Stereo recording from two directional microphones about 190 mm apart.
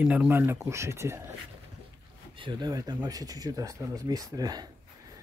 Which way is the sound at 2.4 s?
25° right (ahead or behind).